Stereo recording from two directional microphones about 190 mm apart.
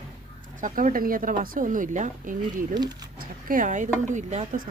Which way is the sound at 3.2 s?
45° right (ahead or behind).